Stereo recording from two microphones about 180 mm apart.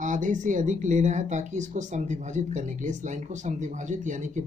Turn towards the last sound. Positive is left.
turn(degrees=-45)  # may be behind; listen again after turning